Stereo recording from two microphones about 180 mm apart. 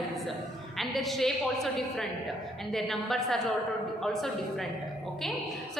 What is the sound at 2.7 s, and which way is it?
Speech, centre (ahead or behind).